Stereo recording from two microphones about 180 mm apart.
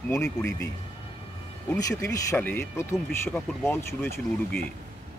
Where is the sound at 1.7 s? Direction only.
20° left (ahead or behind).